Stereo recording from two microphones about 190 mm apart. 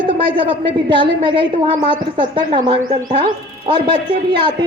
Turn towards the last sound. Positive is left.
turn(degrees=-25)  # may be behind; listen again after turning